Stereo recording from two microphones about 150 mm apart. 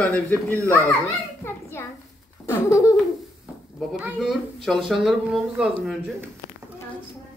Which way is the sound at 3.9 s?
5° right (ahead or behind).